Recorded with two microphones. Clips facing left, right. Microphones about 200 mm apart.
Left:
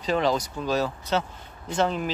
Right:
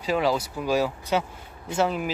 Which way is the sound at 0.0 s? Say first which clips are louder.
Even; 5° right (ahead or behind).